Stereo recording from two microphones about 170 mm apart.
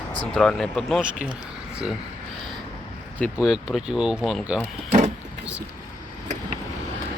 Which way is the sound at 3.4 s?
5° right (ahead or behind).